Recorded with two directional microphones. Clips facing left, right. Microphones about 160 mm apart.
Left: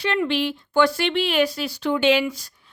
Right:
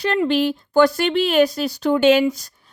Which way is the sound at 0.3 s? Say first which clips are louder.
Right 5 dB; 40° right (ahead or behind).